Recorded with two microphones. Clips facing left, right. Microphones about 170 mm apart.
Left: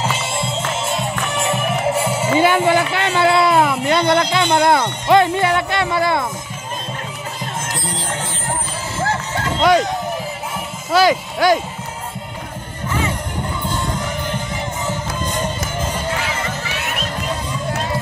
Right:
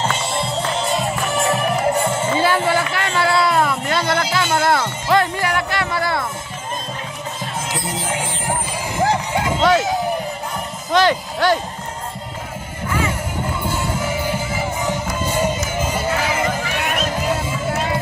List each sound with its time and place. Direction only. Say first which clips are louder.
0.0 s music: even; 5° left (ahead or behind)
4.6 s speech: left 3 dB; 20° left (ahead or behind)
5.1 s music: left 4 dB; 25° left (ahead or behind)
8.1 s music: right 3 dB; 10° right (ahead or behind)
10.9 s speech: left 2 dB; 10° left (ahead or behind)
13.7 s music: right 1 dB; 5° right (ahead or behind)